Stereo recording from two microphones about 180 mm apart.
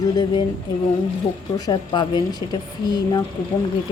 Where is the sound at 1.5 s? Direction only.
25° left (ahead or behind).